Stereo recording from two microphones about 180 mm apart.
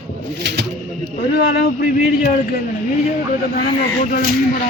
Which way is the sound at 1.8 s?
55° left (ahead or behind).